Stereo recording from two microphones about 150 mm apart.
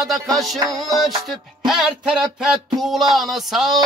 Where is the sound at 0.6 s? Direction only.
25° right (ahead or behind).